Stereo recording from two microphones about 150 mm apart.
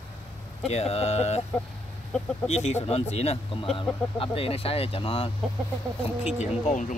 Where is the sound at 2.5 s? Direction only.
45° left (ahead or behind).